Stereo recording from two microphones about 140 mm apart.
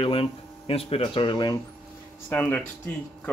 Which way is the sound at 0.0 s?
40° left (ahead or behind).